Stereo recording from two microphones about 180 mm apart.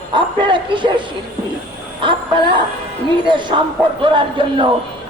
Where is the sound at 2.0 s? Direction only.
25° right (ahead or behind).